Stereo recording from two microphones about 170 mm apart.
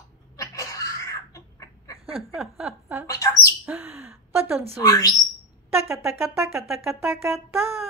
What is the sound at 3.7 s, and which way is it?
Gasp, 10° right (ahead or behind).